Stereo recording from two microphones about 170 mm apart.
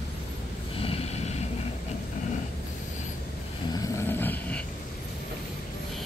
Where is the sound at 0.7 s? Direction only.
35° left (ahead or behind).